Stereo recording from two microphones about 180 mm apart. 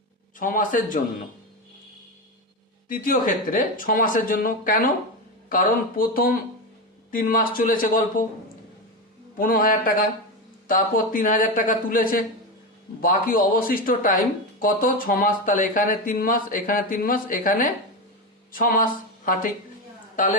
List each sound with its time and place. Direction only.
0.3 s speech: 50° left (ahead or behind)
2.9 s speech: 50° left (ahead or behind)
9.4 s speech: 50° left (ahead or behind)